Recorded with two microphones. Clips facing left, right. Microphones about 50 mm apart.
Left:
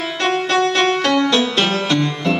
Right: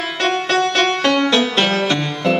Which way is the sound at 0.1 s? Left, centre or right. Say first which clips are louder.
Even; centre.